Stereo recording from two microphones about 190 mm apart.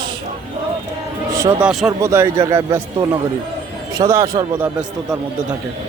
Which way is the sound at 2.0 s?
15° right (ahead or behind).